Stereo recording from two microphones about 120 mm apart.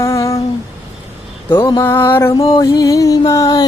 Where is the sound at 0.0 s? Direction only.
25° left (ahead or behind).